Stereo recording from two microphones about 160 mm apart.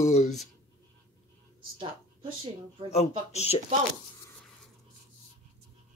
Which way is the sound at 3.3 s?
40° left (ahead or behind).